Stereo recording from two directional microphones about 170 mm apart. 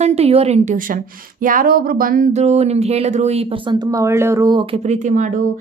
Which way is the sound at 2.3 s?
40° right (ahead or behind).